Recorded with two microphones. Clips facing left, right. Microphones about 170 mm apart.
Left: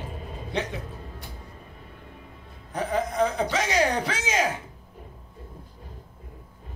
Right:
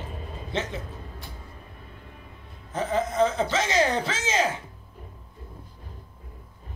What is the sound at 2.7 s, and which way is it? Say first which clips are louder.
A man's voice: right 1 dB; 15° left (ahead or behind).